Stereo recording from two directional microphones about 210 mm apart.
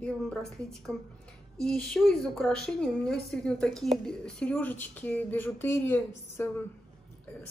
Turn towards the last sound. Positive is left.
turn(degrees=10)  # may be behind; listen again after turning